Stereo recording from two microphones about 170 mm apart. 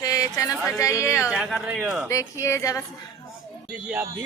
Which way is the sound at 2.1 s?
15° left (ahead or behind).